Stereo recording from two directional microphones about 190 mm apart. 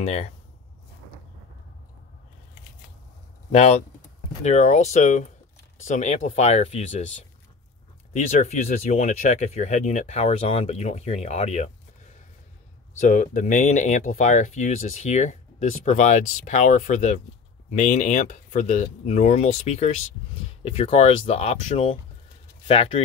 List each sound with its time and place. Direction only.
0.0 s speech: 35° left (ahead or behind)
3.5 s speech: 35° left (ahead or behind)
8.1 s speech: 40° left (ahead or behind)
13.0 s speech: 40° left (ahead or behind)